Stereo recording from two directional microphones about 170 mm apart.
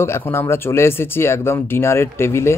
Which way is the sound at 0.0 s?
15° left (ahead or behind).